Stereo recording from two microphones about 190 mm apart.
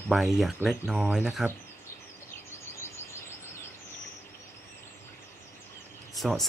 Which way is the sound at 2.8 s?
15° left (ahead or behind).